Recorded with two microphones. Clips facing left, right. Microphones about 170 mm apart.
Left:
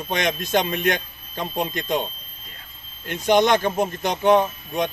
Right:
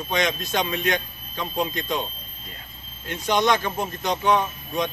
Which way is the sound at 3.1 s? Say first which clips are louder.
Left 4 dB; 50° left (ahead or behind).